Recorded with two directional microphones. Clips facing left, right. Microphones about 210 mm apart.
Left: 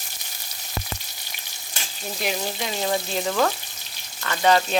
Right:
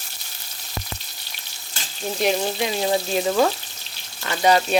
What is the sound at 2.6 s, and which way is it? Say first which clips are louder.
Speech: right 4 dB; 15° right (ahead or behind).